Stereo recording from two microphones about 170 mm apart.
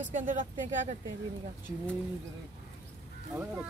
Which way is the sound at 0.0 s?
45° right (ahead or behind).